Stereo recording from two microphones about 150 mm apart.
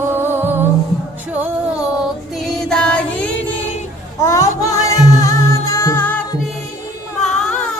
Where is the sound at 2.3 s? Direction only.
Centre (ahead or behind).